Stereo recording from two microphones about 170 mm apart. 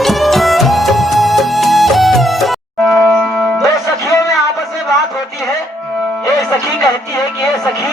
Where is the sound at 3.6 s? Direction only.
20° left (ahead or behind).